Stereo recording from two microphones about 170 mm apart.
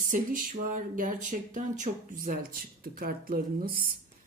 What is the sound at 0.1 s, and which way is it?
Speech, 50° right (ahead or behind).